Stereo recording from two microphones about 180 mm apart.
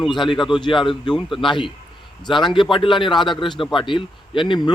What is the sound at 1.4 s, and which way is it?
Speech, 25° left (ahead or behind).